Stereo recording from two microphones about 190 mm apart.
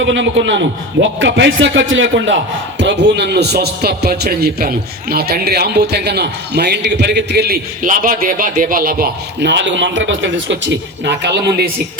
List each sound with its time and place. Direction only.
0.0 s a man's voice: 75° right (ahead or behind)